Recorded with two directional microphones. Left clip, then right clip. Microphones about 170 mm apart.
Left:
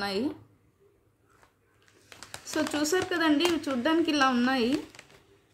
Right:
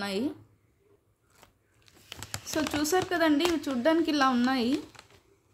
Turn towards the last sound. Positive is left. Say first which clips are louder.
# left 1 dB
turn(degrees=-20)  # may be behind; listen again after turning